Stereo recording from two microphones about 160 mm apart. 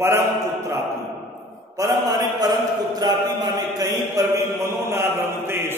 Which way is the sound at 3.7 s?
20° right (ahead or behind).